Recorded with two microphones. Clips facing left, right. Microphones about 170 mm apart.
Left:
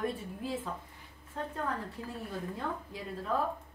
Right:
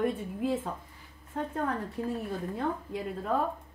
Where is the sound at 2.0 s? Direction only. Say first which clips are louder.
Right 9 dB; 55° right (ahead or behind).